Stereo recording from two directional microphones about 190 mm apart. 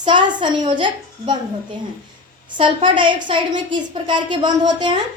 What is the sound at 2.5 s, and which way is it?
A woman's voice, 25° right (ahead or behind).